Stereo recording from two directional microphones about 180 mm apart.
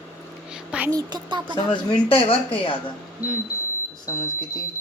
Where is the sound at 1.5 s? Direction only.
25° left (ahead or behind).